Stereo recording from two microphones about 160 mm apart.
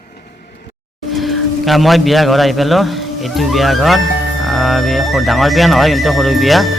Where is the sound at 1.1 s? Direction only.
Centre (ahead or behind).